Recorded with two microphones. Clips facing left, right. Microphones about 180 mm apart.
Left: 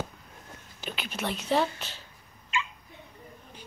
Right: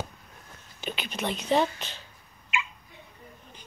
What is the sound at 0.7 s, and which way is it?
Speech, 5° left (ahead or behind).